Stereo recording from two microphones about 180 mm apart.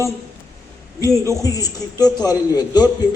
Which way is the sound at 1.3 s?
20° left (ahead or behind).